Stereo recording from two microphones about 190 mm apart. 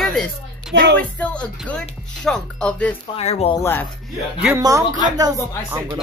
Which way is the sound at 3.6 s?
10° left (ahead or behind).